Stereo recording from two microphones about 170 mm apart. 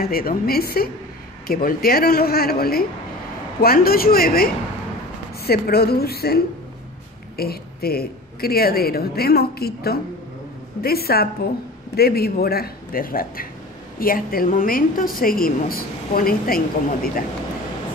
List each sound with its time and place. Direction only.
0.0 s a woman's voice: 60° left (ahead or behind)